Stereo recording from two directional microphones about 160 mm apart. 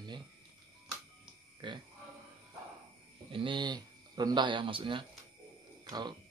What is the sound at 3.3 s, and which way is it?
Speech, 30° right (ahead or behind).